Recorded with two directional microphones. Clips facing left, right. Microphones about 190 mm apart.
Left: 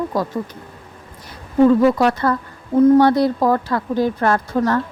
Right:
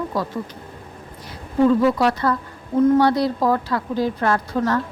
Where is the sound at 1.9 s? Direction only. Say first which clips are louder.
Left 2 dB; 50° left (ahead or behind).